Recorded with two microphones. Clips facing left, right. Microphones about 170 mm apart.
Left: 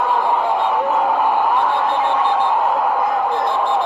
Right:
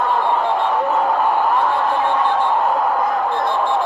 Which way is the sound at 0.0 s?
5° left (ahead or behind).